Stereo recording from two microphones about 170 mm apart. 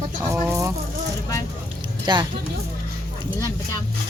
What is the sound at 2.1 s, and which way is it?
Speech, 25° right (ahead or behind).